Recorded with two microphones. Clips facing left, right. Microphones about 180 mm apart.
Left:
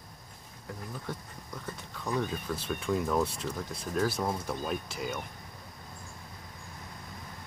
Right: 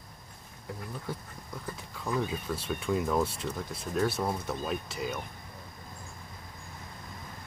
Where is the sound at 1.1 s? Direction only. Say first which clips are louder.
Right 1 dB; 5° right (ahead or behind).